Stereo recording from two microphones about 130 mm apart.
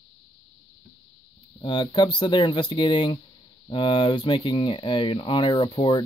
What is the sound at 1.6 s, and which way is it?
Speech, 40° left (ahead or behind).